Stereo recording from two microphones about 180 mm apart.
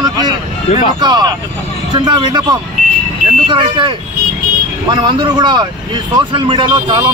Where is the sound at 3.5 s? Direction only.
30° right (ahead or behind).